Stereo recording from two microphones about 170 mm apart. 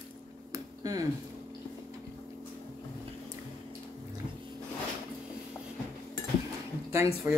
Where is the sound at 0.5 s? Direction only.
20° right (ahead or behind).